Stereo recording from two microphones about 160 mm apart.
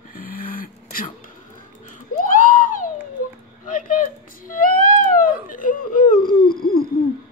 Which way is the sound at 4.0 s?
60° left (ahead or behind).